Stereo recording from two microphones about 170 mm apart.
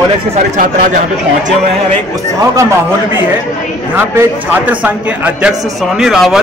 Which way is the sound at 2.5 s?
20° right (ahead or behind).